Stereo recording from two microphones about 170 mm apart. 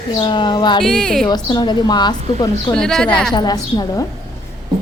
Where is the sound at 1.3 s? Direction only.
25° left (ahead or behind).